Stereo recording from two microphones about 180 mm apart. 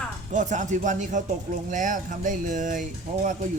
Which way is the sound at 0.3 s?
40° right (ahead or behind).